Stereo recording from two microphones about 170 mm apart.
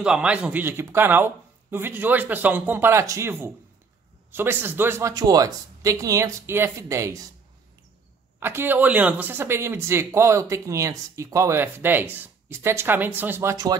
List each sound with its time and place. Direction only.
0.0 s speech: 5° right (ahead or behind)
8.4 s speech: 15° right (ahead or behind)